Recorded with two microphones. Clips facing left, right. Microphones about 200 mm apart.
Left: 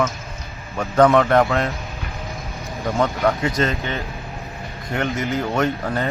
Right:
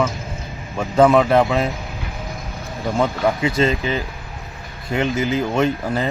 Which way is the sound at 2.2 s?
Centre (ahead or behind).